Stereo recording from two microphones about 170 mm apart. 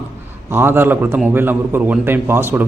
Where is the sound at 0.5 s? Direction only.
15° right (ahead or behind).